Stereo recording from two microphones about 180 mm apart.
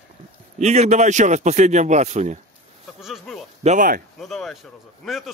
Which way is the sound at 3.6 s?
50° right (ahead or behind).